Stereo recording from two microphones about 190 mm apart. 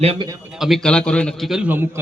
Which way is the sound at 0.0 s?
35° right (ahead or behind).